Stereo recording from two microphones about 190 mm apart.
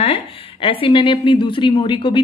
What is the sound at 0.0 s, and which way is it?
A woman's voice, 30° left (ahead or behind).